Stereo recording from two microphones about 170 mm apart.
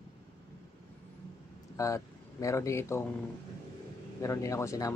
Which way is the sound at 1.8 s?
20° left (ahead or behind).